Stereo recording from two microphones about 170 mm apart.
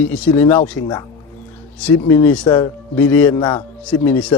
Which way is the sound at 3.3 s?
25° left (ahead or behind).